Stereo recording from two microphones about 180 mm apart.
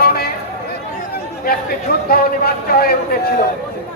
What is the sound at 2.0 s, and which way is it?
A man's voice, 55° left (ahead or behind).